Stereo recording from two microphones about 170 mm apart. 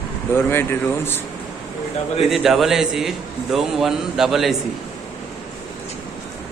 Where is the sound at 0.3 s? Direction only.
15° left (ahead or behind).